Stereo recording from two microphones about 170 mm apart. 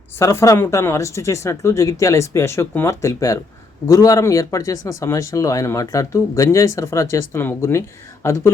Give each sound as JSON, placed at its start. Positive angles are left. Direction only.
{"t": 0.2, "sound": "speech", "side_deg": 15}